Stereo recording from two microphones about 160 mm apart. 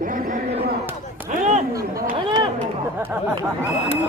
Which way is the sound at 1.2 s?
45° right (ahead or behind).